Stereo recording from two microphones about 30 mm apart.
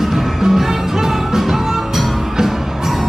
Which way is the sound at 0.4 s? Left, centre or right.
Centre.